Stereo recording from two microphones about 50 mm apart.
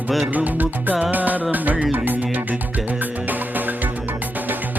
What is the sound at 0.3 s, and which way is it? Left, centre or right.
Music, right.